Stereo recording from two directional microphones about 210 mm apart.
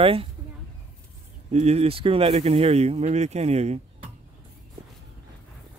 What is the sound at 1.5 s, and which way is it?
Speech, 30° right (ahead or behind).